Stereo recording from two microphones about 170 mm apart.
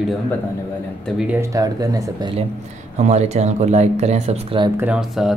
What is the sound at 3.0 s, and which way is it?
Speech, 40° right (ahead or behind).